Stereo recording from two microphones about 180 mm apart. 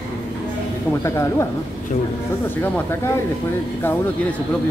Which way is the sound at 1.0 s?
15° left (ahead or behind).